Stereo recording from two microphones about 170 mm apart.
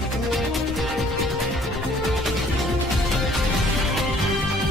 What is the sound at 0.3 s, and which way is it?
Music, centre (ahead or behind).